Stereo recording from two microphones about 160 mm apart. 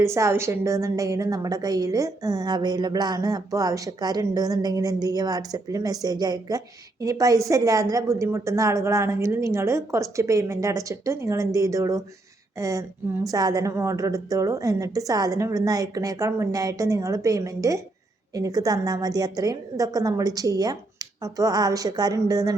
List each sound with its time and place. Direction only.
0.0 s a woman's voice: 15° right (ahead or behind)